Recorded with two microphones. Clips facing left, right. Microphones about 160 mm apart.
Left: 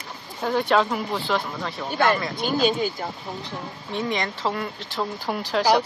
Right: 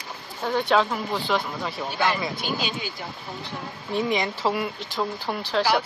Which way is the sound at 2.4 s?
45° left (ahead or behind).